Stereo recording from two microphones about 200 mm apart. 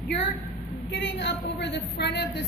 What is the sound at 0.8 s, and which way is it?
A woman's voice, 60° left (ahead or behind).